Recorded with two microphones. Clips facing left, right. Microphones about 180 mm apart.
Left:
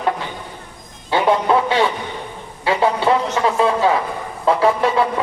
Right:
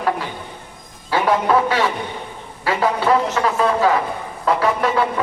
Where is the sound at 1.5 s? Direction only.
25° left (ahead or behind).